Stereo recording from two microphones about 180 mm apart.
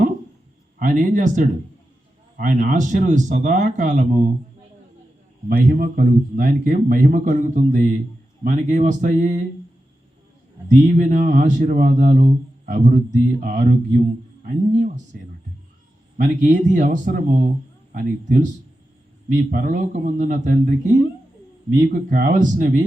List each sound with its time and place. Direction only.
0.8 s a man's voice: 50° right (ahead or behind)
5.5 s a man's voice: 50° right (ahead or behind)
10.7 s a man's voice: 40° right (ahead or behind)
16.1 s a man's voice: 45° right (ahead or behind)